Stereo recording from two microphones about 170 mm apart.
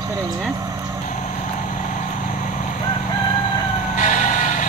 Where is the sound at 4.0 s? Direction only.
45° left (ahead or behind).